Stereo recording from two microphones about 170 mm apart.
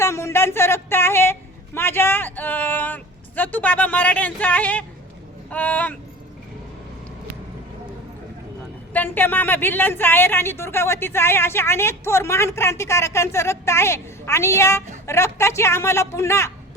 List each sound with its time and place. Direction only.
0.0 s a woman's voice: 15° left (ahead or behind)
8.9 s a woman's voice: 10° left (ahead or behind)